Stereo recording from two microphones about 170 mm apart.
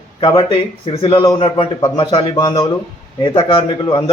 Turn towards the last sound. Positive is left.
turn(degrees=30)  # may be behind; listen again after turning